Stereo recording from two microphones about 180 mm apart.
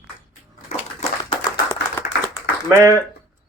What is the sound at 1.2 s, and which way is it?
Clapping, 25° left (ahead or behind).